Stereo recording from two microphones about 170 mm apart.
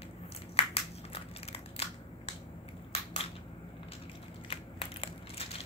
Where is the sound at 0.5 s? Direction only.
35° left (ahead or behind).